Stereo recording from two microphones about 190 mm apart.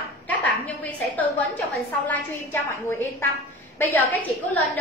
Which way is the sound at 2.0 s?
10° left (ahead or behind).